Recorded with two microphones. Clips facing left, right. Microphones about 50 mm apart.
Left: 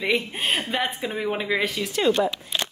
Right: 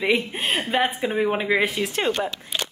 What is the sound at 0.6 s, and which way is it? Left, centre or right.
A woman's voice, centre.